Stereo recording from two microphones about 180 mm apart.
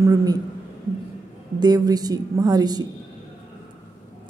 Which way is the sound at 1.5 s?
20° right (ahead or behind).